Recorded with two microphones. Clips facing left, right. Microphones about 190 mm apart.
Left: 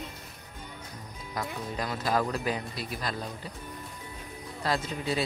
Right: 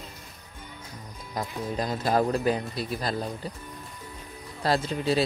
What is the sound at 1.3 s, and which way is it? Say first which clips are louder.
Speech: right 4 dB; 30° right (ahead or behind).